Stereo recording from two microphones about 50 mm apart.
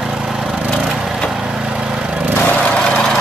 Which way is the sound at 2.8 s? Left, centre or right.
Centre.